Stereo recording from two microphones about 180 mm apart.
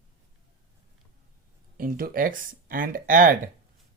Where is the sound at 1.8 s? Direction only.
50° right (ahead or behind).